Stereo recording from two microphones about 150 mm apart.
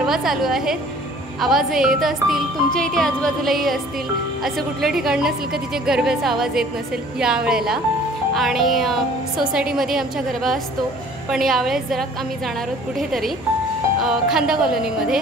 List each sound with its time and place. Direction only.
0.0 s a woman's voice: centre (ahead or behind)
1.4 s music: centre (ahead or behind)